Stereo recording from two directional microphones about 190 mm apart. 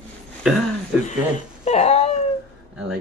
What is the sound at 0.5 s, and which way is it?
Speech, centre (ahead or behind).